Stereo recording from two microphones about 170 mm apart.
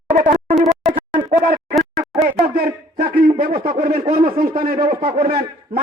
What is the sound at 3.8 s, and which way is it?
A man's voice, 60° right (ahead or behind).